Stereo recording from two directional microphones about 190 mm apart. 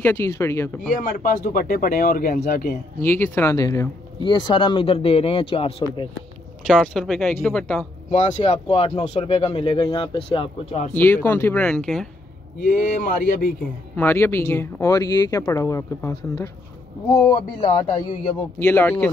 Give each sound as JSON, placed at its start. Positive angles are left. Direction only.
{"t": 0.0, "sound": "speech", "side_deg": 10}
{"t": 0.9, "sound": "speech", "side_deg": 45}
{"t": 3.0, "sound": "speech", "side_deg": 10}
{"t": 6.7, "sound": "speech", "side_deg": 0}
{"t": 8.1, "sound": "speech", "side_deg": 40}
{"t": 11.0, "sound": "speech", "side_deg": 10}
{"t": 12.5, "sound": "speech", "side_deg": 45}
{"t": 13.9, "sound": "speech", "side_deg": 10}